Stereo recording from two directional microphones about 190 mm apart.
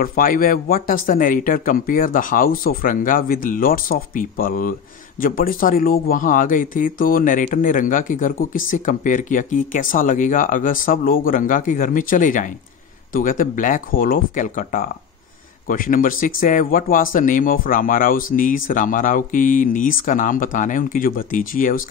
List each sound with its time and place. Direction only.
0.0 s speech: 50° left (ahead or behind)